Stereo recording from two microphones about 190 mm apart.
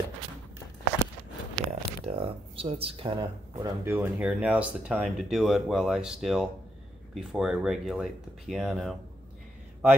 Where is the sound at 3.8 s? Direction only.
10° right (ahead or behind).